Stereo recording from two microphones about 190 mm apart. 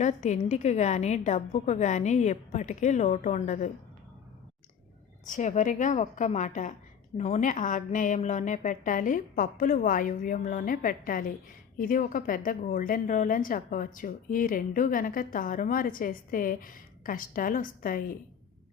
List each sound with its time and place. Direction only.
0.0 s a woman's voice: 40° left (ahead or behind)
5.2 s a woman's voice: 40° left (ahead or behind)